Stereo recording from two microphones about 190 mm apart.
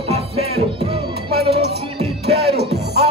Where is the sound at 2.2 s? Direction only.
60° right (ahead or behind).